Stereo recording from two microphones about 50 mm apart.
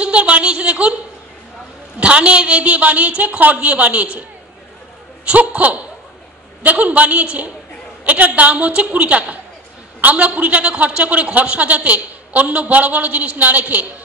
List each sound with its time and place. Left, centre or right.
0.0 s a man's voice: right
2.0 s a man's voice: right
5.2 s a man's voice: right